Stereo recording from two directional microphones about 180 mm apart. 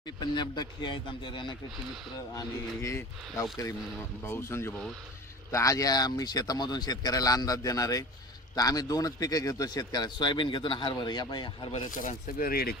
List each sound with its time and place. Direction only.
0.2 s a man's voice: 25° left (ahead or behind)
11.9 s speech: 45° left (ahead or behind)